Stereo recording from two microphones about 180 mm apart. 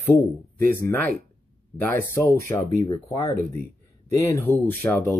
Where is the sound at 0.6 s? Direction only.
10° left (ahead or behind).